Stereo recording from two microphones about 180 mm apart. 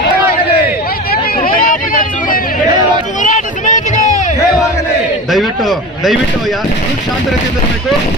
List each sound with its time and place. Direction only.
1.1 s vehicle: 55° left (ahead or behind)
1.6 s a sound: 50° left (ahead or behind)
5.3 s a man's voice: centre (ahead or behind)